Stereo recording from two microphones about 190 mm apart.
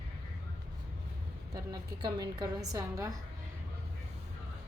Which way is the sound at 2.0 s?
20° right (ahead or behind).